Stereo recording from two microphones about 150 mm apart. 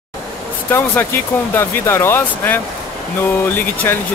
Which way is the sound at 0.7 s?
15° left (ahead or behind).